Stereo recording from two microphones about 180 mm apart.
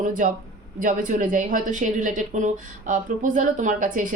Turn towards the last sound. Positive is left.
turn(degrees=-50)  # may be behind; listen again after turning